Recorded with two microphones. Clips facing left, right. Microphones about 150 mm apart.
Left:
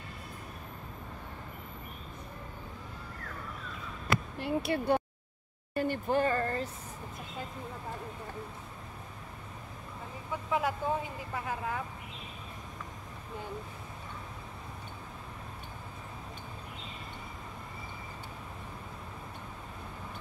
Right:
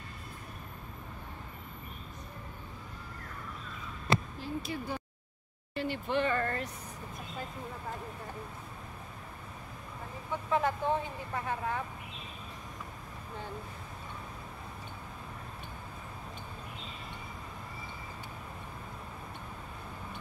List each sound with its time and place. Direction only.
4.4 s speech: 70° left (ahead or behind)
5.8 s speech: 45° left (ahead or behind)
10.5 s speech: 10° left (ahead or behind)